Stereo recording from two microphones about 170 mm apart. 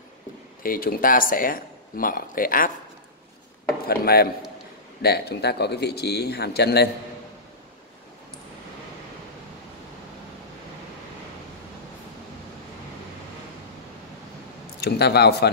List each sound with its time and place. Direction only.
0.6 s speech: 60° left (ahead or behind)
3.8 s speech: 65° left (ahead or behind)
14.8 s speech: 75° left (ahead or behind)